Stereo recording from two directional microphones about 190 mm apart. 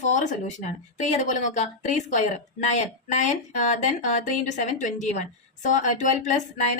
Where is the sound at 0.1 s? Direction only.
40° left (ahead or behind).